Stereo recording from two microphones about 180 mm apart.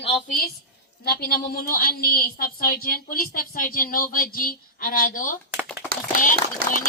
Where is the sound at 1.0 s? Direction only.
60° left (ahead or behind).